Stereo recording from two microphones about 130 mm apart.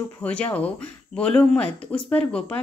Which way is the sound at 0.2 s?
10° left (ahead or behind).